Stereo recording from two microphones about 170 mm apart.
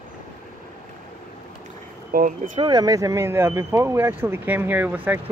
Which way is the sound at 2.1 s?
50° right (ahead or behind).